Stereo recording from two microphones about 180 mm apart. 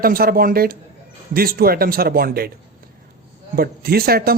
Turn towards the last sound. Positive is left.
turn(degrees=-55)  # may be behind; listen again after turning